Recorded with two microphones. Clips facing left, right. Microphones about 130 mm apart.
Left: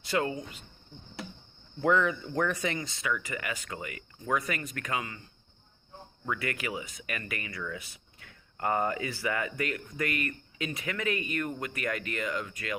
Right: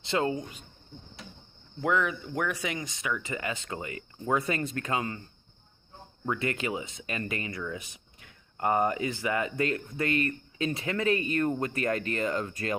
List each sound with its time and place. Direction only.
0.0 s speech: 25° right (ahead or behind)
1.8 s speech: 5° right (ahead or behind); by 5.2 s 30° right (ahead or behind)
6.2 s speech: 25° right (ahead or behind)